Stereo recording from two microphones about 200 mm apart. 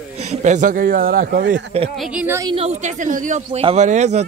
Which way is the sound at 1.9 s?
5° right (ahead or behind).